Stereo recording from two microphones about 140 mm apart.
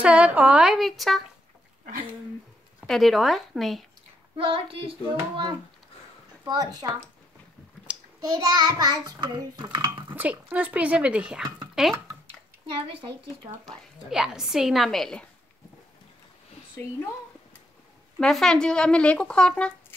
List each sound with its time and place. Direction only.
0.0 s speech: 10° right (ahead or behind)
2.8 s a woman's voice: centre (ahead or behind)
4.4 s a woman's voice: 40° right (ahead or behind)
6.4 s a sound: 30° right (ahead or behind)
8.2 s a sound: 25° right (ahead or behind)
10.0 s a woman's voice: 10° right (ahead or behind)
12.7 s a woman's voice: 40° right (ahead or behind)
14.1 s a woman's voice: 5° right (ahead or behind)
18.2 s speech: 5° left (ahead or behind)